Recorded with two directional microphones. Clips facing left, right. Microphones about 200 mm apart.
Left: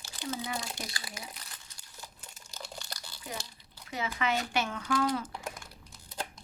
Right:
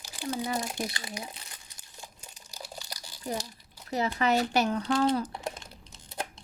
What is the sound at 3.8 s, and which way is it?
Speech, 40° right (ahead or behind).